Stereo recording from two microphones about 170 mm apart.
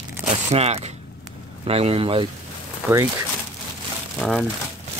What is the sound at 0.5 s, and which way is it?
Speech, 35° right (ahead or behind).